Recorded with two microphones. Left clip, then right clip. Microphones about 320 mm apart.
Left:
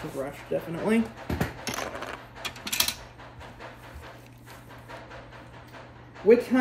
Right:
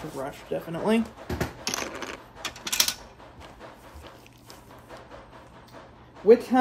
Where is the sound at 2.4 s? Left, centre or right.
Right.